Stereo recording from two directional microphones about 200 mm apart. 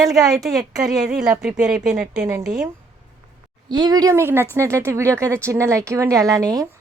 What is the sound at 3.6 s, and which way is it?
Speech, 20° right (ahead or behind).